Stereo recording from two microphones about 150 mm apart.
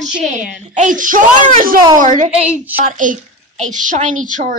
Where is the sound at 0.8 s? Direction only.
60° right (ahead or behind).